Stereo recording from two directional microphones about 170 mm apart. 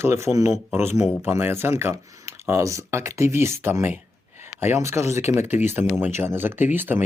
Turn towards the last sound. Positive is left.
turn(degrees=-10)  # may be behind; listen again after turning